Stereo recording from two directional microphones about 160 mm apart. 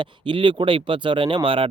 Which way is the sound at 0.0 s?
30° right (ahead or behind).